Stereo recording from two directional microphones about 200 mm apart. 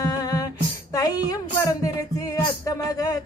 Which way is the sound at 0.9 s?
20° left (ahead or behind).